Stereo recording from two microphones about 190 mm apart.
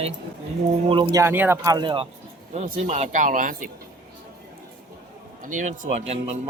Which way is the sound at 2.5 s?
40° right (ahead or behind).